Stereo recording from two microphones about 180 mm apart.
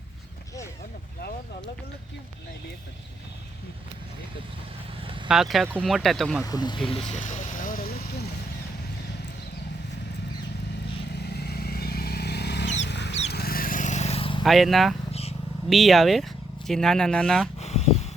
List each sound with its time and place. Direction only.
5.3 s speech: centre (ahead or behind)
6.4 s vehicle: 20° left (ahead or behind); by 8.3 s 55° left (ahead or behind)
11.1 s vehicle: 65° left (ahead or behind)
13.2 s vehicle: 60° left (ahead or behind); by 14.4 s 30° left (ahead or behind)
14.4 s speech: centre (ahead or behind)
15.1 s vehicle: 35° left (ahead or behind)
15.7 s speech: centre (ahead or behind)
17.6 s a sound: 35° left (ahead or behind)